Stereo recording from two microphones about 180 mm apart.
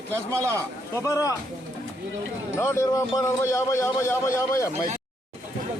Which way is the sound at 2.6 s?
15° left (ahead or behind).